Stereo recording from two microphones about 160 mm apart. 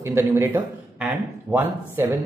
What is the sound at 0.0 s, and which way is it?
Speech, 15° right (ahead or behind).